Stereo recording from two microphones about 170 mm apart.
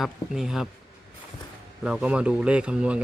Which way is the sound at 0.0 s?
5° right (ahead or behind).